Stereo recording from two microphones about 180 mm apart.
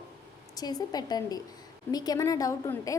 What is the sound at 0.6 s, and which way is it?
A woman's voice, 20° left (ahead or behind).